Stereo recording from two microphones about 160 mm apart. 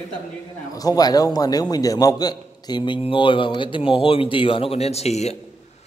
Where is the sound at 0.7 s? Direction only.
25° left (ahead or behind).